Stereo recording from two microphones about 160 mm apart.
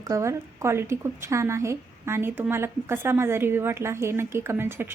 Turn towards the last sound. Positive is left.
turn(degrees=-15)  # may be behind; listen again after turning